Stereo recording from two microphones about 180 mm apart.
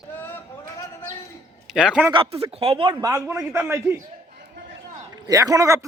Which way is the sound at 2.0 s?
30° right (ahead or behind).